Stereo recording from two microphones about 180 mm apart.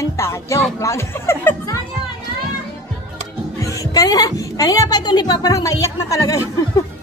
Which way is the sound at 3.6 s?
20° left (ahead or behind).